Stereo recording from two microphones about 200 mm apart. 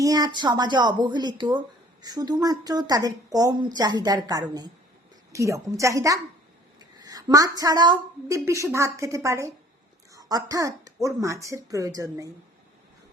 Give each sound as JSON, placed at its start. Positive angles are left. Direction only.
{"t": 0.0, "sound": "a woman's voice", "side_deg": -20}